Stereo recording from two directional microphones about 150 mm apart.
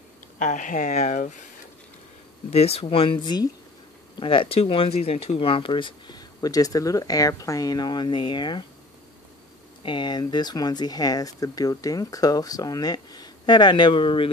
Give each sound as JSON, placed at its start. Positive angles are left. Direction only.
{"t": 0.4, "sound": "speech", "side_deg": 55}
{"t": 2.5, "sound": "speech", "side_deg": 40}
{"t": 9.8, "sound": "speech", "side_deg": 30}